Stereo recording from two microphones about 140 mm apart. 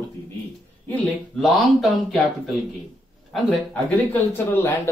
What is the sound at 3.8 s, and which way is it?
Speech, 10° left (ahead or behind).